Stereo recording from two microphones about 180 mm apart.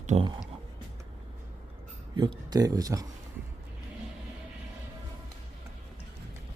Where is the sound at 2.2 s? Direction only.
25° right (ahead or behind).